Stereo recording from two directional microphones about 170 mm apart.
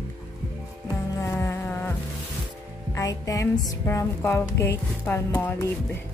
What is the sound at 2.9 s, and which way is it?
Music, 20° left (ahead or behind).